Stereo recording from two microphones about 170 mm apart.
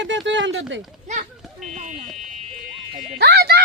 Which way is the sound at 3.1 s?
70° right (ahead or behind).